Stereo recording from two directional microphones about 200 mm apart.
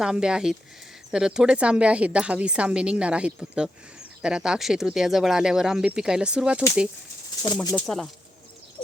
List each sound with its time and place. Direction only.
0.0 s a woman's voice: 5° right (ahead or behind)
7.4 s speech: 20° left (ahead or behind)
7.9 s a woman's voice: centre (ahead or behind)